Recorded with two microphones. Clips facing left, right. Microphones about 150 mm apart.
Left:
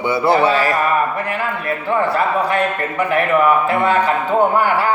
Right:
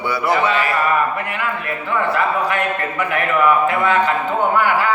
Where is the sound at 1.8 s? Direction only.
35° left (ahead or behind).